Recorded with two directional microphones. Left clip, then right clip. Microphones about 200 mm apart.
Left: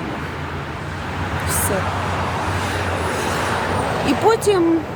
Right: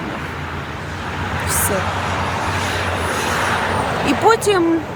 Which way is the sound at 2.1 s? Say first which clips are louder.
Right 2 dB; 50° left (ahead or behind).